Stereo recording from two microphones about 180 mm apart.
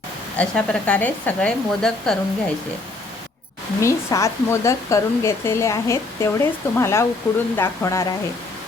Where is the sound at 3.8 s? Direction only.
15° left (ahead or behind).